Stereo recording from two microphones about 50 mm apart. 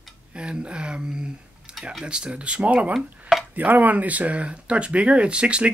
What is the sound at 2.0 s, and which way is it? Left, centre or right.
Speech, right.